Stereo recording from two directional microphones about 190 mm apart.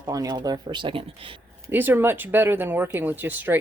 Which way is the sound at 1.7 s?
10° right (ahead or behind).